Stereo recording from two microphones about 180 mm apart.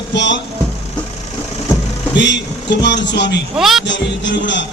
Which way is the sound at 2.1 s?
75° left (ahead or behind).